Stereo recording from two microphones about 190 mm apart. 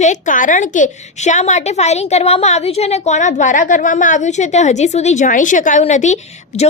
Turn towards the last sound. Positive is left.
turn(degrees=35)  # may be behind; listen again after turning